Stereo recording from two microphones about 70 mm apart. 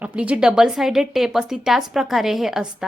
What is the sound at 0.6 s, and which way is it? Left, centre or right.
A woman's voice, centre.